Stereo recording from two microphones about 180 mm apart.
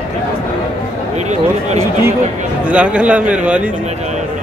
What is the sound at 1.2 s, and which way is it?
Speech, 40° right (ahead or behind).